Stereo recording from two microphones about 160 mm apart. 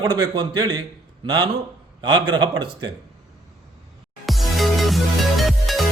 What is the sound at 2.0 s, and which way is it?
Speech, 25° right (ahead or behind).